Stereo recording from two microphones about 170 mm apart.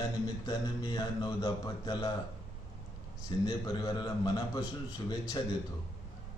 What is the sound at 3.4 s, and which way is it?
A man's voice, 25° left (ahead or behind).